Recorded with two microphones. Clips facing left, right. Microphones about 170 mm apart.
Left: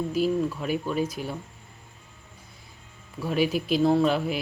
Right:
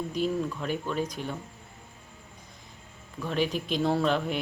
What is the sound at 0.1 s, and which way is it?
Speech, 5° left (ahead or behind).